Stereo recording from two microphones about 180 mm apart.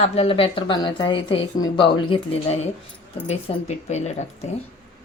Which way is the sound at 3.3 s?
40° left (ahead or behind).